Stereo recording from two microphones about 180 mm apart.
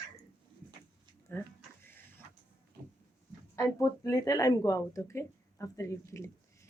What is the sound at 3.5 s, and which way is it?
Speech, 15° left (ahead or behind).